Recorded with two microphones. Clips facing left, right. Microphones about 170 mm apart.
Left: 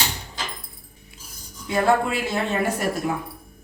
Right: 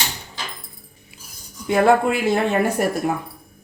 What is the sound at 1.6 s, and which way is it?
Speech, 60° right (ahead or behind).